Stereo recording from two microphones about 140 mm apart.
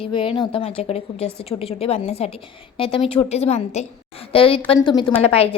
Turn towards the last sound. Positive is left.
turn(degrees=45)  # may be behind; listen again after turning